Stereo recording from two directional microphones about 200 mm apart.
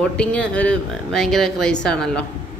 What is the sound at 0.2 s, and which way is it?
Speech, 5° left (ahead or behind).